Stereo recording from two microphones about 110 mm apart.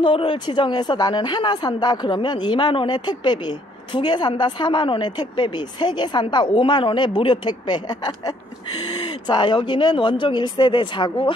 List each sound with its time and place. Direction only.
0.0 s a woman's voice: 50° left (ahead or behind)